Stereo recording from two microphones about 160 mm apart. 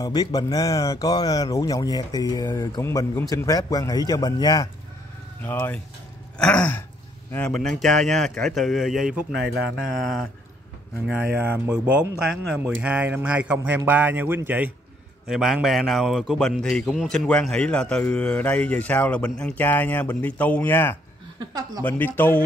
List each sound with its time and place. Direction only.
0.0 s speech: 25° left (ahead or behind)
5.4 s a man's voice: 10° left (ahead or behind)
6.3 s throat clearing: 5° left (ahead or behind)
7.3 s a man's voice: 5° left (ahead or behind)
11.1 s a man's voice: 10° right (ahead or behind); by 22.4 s 10° left (ahead or behind)